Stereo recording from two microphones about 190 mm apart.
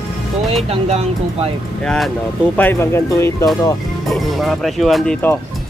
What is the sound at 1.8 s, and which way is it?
Speech, centre (ahead or behind).